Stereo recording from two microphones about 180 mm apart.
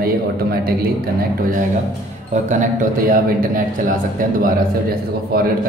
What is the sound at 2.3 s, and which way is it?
Speech, 40° right (ahead or behind).